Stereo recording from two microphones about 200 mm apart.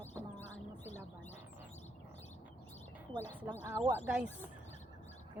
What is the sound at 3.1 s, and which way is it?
Speech, 10° left (ahead or behind).